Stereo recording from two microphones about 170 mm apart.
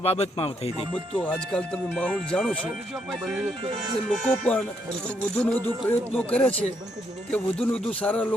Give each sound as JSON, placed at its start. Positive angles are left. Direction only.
{"t": 0.0, "sound": "speech", "side_deg": 35}
{"t": 1.2, "sound": "speech", "side_deg": 5}